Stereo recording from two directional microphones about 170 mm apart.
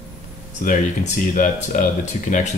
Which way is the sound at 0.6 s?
45° left (ahead or behind).